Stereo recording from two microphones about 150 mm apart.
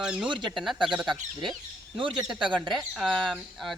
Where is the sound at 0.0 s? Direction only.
5° right (ahead or behind).